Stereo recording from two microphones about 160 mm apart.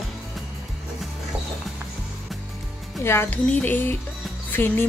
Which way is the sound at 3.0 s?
15° left (ahead or behind).